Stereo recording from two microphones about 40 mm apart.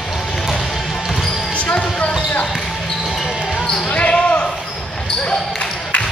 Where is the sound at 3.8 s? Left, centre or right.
Left.